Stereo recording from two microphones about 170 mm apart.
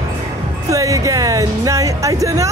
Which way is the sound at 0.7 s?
20° right (ahead or behind).